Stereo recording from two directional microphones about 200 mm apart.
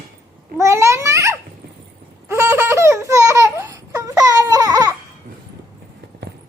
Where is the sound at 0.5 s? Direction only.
15° right (ahead or behind).